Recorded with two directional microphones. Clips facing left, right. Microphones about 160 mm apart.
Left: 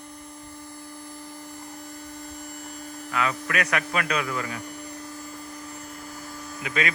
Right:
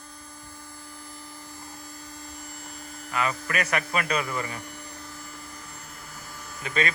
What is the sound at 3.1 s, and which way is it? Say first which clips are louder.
A man's voice: left 1 dB; 5° right (ahead or behind).